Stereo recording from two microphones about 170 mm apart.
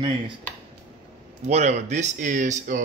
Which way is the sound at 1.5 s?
45° right (ahead or behind).